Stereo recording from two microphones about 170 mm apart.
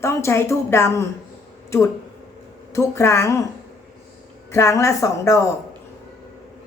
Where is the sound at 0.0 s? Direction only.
15° left (ahead or behind).